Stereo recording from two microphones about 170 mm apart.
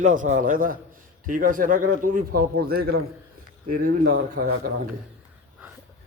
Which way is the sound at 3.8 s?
55° right (ahead or behind).